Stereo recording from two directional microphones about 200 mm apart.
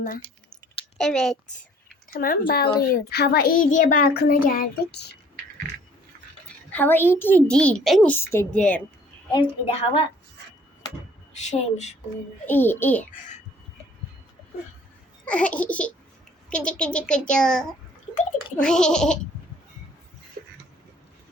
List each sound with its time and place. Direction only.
0.9 s a child's voice: 5° left (ahead or behind)
2.0 s a child's voice: 45° left (ahead or behind)
6.7 s a child's voice: 10° left (ahead or behind)
9.3 s a woman's voice: 25° left (ahead or behind)
11.4 s speech: 35° left (ahead or behind)
12.5 s a child's voice: 10° left (ahead or behind)
15.2 s a child's voice: 5° left (ahead or behind)